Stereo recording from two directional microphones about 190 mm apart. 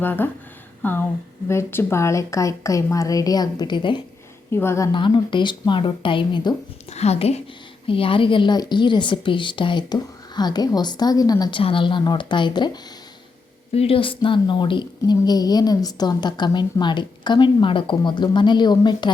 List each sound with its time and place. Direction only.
0.0 s a woman's voice: 10° left (ahead or behind)
4.5 s a woman's voice: 15° left (ahead or behind)
4.9 s a woman's voice: 25° left (ahead or behind)